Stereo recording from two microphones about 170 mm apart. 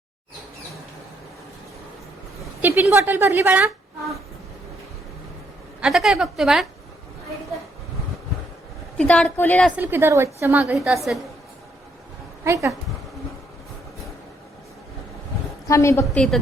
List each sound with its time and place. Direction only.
2.6 s a woman's voice: 15° right (ahead or behind)
5.8 s a woman's voice: centre (ahead or behind)
9.0 s a woman's voice: 5° left (ahead or behind)
9.7 s a woman's voice: 15° right (ahead or behind)
10.6 s a woman's voice: centre (ahead or behind)
12.5 s speech: 20° right (ahead or behind)
15.6 s a woman's voice: 15° left (ahead or behind)
16.1 s a woman's voice: 5° left (ahead or behind)